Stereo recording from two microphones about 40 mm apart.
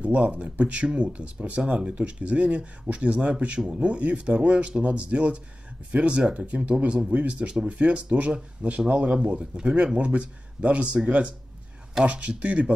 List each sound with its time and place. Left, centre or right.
0.0 s speech: right
1.7 s speech: right